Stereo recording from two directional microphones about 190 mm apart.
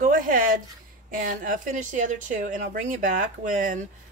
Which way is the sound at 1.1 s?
45° right (ahead or behind).